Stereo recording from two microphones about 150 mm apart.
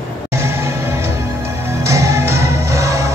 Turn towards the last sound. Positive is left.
turn(degrees=-20)  # may be behind; listen again after turning